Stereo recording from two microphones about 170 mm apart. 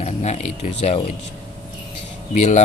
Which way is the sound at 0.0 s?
40° left (ahead or behind).